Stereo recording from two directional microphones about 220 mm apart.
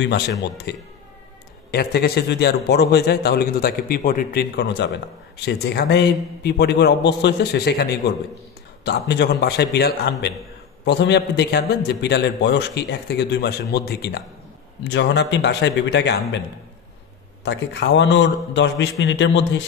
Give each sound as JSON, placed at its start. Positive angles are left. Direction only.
{"t": 0.0, "sound": "a man's voice", "side_deg": 50}
{"t": 17.5, "sound": "a man's voice", "side_deg": 50}